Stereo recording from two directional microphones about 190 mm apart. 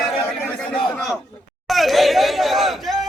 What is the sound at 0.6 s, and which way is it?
A man's voice, 5° left (ahead or behind).